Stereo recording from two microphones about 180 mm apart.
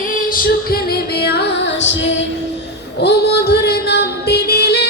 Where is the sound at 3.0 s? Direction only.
65° left (ahead or behind).